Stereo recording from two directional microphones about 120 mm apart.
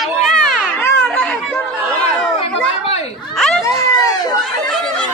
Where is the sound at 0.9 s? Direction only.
10° left (ahead or behind).